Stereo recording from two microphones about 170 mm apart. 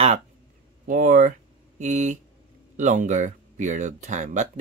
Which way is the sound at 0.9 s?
50° right (ahead or behind).